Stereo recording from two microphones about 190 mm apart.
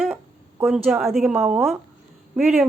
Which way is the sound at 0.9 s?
5° right (ahead or behind).